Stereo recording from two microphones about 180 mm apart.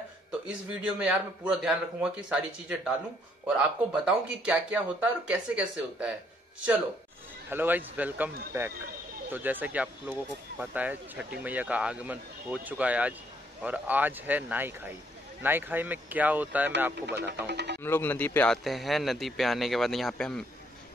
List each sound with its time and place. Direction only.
0.5 s a man's voice: 5° right (ahead or behind)
7.4 s speech: 10° right (ahead or behind)
17.5 s speech: 70° right (ahead or behind)
17.8 s a man's voice: 10° left (ahead or behind)